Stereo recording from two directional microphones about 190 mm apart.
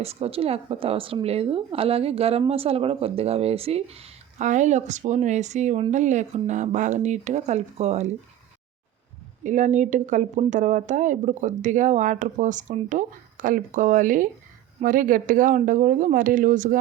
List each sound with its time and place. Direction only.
0.0 s speech: 35° right (ahead or behind)
9.4 s a woman's voice: 40° right (ahead or behind)